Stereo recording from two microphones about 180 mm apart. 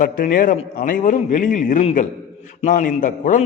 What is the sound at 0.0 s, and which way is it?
A man's voice, 50° left (ahead or behind).